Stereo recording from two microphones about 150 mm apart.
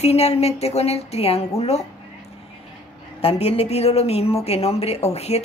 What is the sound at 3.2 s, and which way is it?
Speech, 40° left (ahead or behind).